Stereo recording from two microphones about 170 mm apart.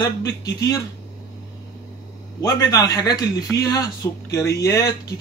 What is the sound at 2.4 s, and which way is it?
Speech, 20° left (ahead or behind).